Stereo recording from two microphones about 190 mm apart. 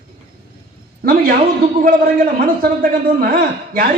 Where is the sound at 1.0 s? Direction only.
50° right (ahead or behind).